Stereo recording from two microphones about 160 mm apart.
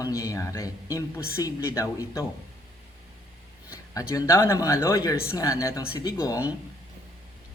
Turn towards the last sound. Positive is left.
turn(degrees=20)  # may be behind; listen again after turning